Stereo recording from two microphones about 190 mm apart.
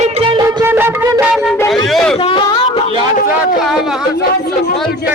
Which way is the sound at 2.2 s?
25° left (ahead or behind).